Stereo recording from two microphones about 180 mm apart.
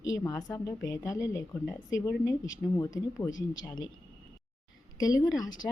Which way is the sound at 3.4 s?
20° left (ahead or behind).